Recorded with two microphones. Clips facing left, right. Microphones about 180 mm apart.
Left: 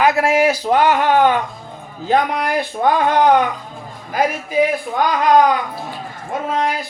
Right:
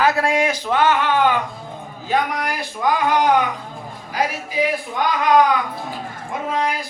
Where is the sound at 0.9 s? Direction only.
45° left (ahead or behind).